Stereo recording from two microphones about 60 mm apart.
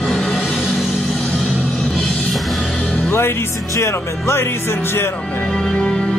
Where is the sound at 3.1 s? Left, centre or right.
Left.